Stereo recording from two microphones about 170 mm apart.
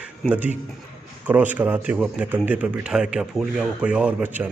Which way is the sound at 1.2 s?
10° right (ahead or behind).